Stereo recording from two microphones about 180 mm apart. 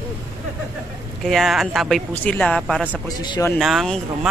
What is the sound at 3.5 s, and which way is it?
Speech, centre (ahead or behind).